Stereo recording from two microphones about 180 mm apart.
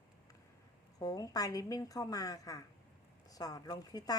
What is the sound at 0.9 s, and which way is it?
A woman's voice, 20° left (ahead or behind).